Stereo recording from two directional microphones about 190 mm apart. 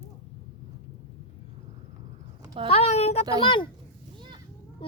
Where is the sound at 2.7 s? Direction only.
35° left (ahead or behind).